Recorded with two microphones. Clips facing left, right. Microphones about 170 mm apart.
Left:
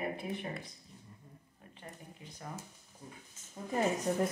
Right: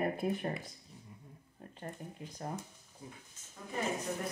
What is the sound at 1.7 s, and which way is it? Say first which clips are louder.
Speech: right 6 dB; 45° right (ahead or behind).